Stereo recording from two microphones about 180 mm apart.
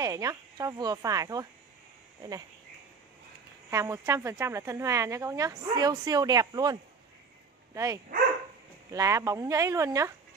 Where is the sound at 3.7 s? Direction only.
15° right (ahead or behind).